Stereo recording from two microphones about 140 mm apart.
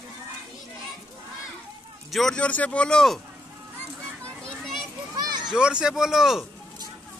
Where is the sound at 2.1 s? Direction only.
Centre (ahead or behind).